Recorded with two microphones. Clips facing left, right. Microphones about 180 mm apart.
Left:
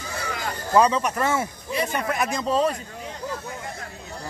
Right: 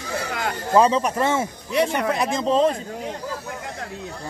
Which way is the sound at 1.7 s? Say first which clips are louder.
Right 6 dB; 70° right (ahead or behind).